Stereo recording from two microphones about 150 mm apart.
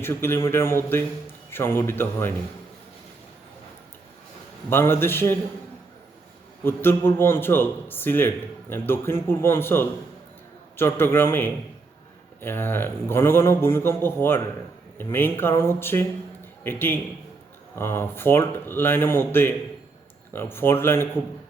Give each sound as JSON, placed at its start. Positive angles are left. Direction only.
{"t": 0.0, "sound": "speech", "side_deg": 15}
{"t": 4.7, "sound": "speech", "side_deg": 15}
{"t": 6.7, "sound": "speech", "side_deg": 15}